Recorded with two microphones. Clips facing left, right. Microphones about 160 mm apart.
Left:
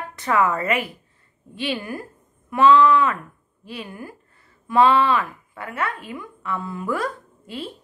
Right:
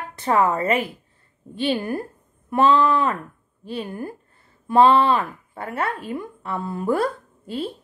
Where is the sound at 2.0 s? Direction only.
30° right (ahead or behind).